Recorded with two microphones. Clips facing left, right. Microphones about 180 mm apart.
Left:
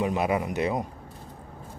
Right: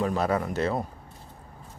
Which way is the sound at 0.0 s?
15° left (ahead or behind).